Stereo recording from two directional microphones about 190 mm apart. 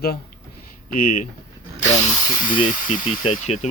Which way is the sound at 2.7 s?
45° left (ahead or behind).